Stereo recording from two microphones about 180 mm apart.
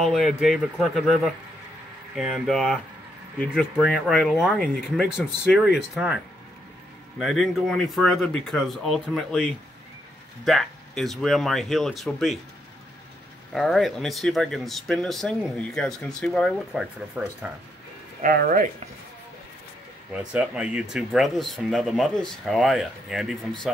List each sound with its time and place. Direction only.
0.0 s speech: centre (ahead or behind)
13.5 s speech: centre (ahead or behind)
18.2 s speech: 50° right (ahead or behind)
20.1 s speech: 5° right (ahead or behind)